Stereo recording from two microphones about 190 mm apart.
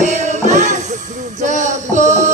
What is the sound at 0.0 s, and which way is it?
Music, 40° right (ahead or behind).